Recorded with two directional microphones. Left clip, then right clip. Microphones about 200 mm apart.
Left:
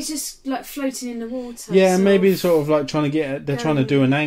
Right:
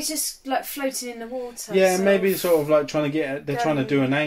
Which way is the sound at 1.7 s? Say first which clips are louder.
Left 3 dB; 55° left (ahead or behind).